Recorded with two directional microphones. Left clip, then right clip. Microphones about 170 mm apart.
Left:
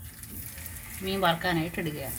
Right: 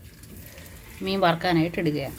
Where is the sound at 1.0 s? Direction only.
50° right (ahead or behind).